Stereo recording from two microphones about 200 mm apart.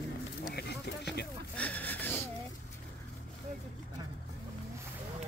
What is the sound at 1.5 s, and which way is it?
Speech, 5° left (ahead or behind).